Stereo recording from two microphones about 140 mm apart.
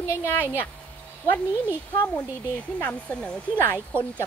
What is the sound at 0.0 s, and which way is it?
Speech, 20° left (ahead or behind).